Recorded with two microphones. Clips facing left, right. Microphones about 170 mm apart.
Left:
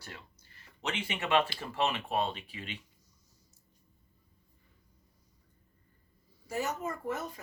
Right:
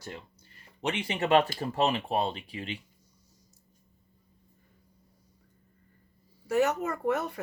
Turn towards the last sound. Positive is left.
turn(degrees=-65)  # may be behind; listen again after turning